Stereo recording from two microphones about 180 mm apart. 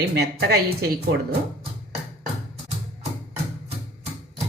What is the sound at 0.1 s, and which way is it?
Speech, 65° right (ahead or behind).